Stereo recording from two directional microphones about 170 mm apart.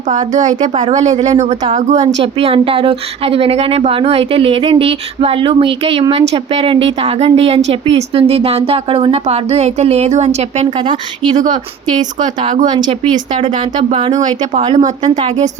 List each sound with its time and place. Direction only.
0.1 s speech: 45° right (ahead or behind)
10.8 s speech: 25° right (ahead or behind)
14.6 s speech: 25° right (ahead or behind)